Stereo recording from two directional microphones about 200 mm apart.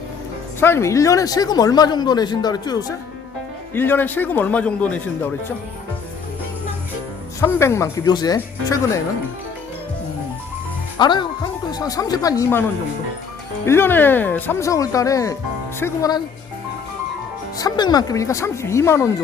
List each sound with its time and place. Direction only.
0.6 s speech: 15° left (ahead or behind)
7.4 s speech: 15° left (ahead or behind)
10.9 s speech: 20° left (ahead or behind)
13.7 s speech: 10° left (ahead or behind)
17.6 s speech: 20° left (ahead or behind)